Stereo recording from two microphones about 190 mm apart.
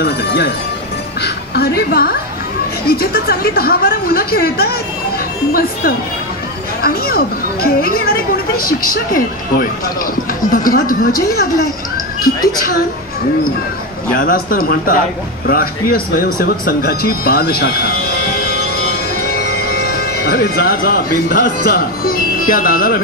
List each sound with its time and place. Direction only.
0.0 s music: 60° left (ahead or behind)
1.2 s a woman's voice: 55° left (ahead or behind)
14.1 s speech: 50° left (ahead or behind)